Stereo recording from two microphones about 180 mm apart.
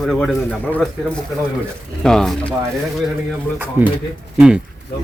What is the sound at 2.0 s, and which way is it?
Speech, 5° left (ahead or behind).